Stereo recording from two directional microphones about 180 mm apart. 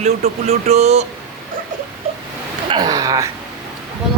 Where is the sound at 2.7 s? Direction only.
20° right (ahead or behind).